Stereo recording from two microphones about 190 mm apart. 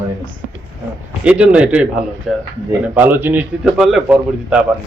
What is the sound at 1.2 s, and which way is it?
Speech, 5° right (ahead or behind).